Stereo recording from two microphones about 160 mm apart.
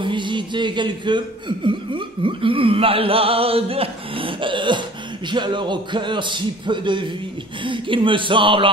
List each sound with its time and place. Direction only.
0.0 s a man's voice: 30° right (ahead or behind)